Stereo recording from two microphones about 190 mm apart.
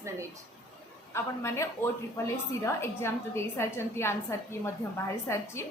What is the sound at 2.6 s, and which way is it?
A woman's voice, 15° left (ahead or behind).